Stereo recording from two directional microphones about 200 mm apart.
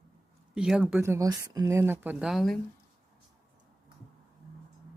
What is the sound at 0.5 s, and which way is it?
Speech, 5° right (ahead or behind).